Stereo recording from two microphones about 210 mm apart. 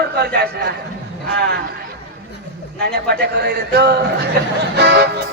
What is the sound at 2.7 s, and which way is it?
A man's voice, 50° right (ahead or behind).